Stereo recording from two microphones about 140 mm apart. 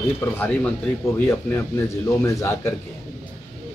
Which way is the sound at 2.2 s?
20° left (ahead or behind).